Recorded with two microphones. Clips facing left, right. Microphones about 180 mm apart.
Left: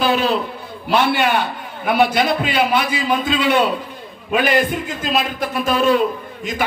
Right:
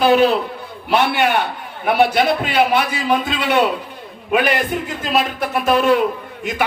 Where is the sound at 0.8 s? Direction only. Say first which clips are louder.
Even; 60° right (ahead or behind).